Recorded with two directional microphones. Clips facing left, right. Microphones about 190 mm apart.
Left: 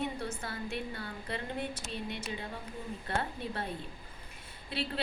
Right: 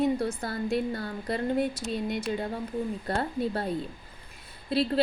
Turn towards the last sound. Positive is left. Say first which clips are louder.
# right 10 dB
turn(degrees=-40)  # may be behind; listen again after turning